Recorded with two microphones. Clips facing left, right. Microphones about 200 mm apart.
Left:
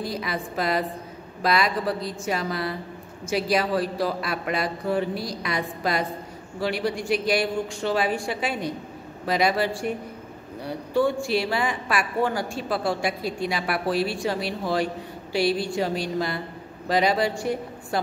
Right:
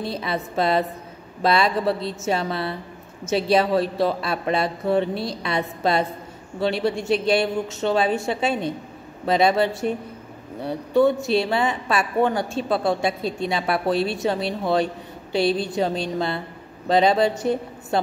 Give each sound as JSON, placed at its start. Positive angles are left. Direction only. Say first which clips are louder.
{"t": 0.0, "sound": "a woman's voice", "louder": "right 2 dB", "side_deg": -25}